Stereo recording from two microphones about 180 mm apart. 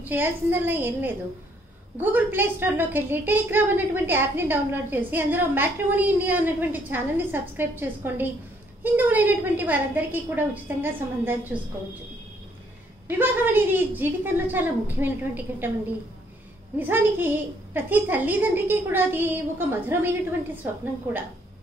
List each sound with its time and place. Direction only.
0.0 s a woman's voice: 10° right (ahead or behind)
13.2 s a woman's voice: 10° right (ahead or behind)
16.7 s a woman's voice: 10° right (ahead or behind)